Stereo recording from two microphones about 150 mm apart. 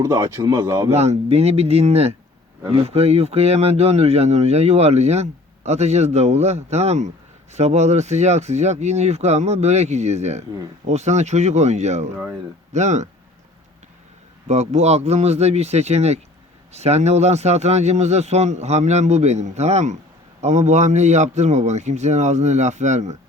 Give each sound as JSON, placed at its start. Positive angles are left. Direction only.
{"t": 0.0, "sound": "speech", "side_deg": -20}
{"t": 0.9, "sound": "speech", "side_deg": -45}
{"t": 14.4, "sound": "speech", "side_deg": -50}